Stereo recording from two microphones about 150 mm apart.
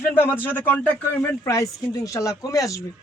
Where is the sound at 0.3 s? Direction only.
10° left (ahead or behind).